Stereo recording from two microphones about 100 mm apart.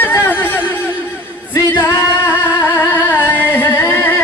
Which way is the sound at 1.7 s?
20° left (ahead or behind).